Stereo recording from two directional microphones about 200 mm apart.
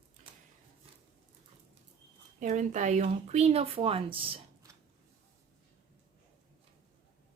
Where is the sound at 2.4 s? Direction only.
35° right (ahead or behind).